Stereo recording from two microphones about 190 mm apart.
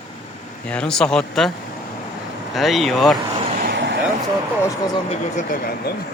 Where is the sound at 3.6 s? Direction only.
65° right (ahead or behind).